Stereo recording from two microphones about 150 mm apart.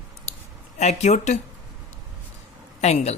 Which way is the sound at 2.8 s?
45° left (ahead or behind).